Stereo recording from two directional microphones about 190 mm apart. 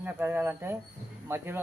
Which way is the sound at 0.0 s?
10° right (ahead or behind).